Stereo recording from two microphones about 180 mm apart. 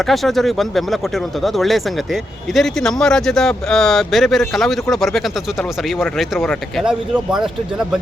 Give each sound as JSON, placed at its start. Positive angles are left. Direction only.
{"t": 0.0, "sound": "speech", "side_deg": 0}